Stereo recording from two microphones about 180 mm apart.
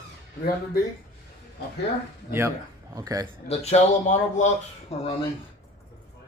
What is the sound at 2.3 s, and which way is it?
Speech, 15° right (ahead or behind).